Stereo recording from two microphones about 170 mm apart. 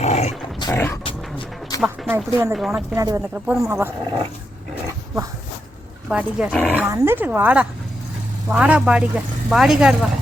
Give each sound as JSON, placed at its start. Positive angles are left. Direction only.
{"t": 0.0, "sound": "dog", "side_deg": 40}
{"t": 0.6, "sound": "dog", "side_deg": 15}
{"t": 1.0, "sound": "music", "side_deg": 30}
{"t": 1.8, "sound": "speech", "side_deg": -10}
{"t": 2.6, "sound": "speech", "side_deg": 0}
{"t": 2.9, "sound": "speech", "side_deg": -20}
{"t": 3.2, "sound": "speech", "side_deg": -5}
{"t": 4.7, "sound": "dog", "side_deg": -15}
{"t": 6.1, "sound": "speech", "side_deg": -5}